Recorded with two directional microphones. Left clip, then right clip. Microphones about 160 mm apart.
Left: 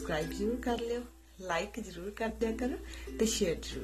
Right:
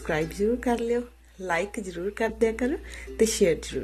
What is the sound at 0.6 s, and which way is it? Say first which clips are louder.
A woman's voice: right 8 dB; 30° right (ahead or behind).